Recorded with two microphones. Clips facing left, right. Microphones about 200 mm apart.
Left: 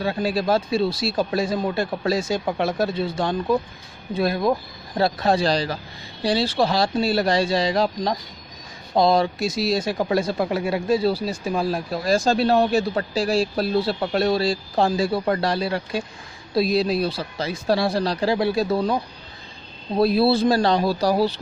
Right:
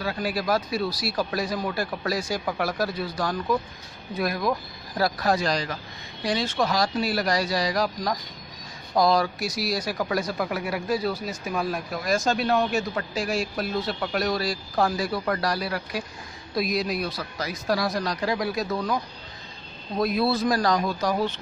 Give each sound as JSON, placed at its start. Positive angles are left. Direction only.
{"t": 0.0, "sound": "speech", "side_deg": 25}
{"t": 20.0, "sound": "speech", "side_deg": 30}